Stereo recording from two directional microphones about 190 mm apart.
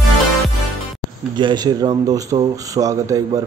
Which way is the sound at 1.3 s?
25° right (ahead or behind).